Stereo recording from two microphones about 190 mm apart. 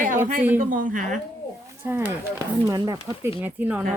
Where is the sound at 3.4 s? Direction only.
10° right (ahead or behind).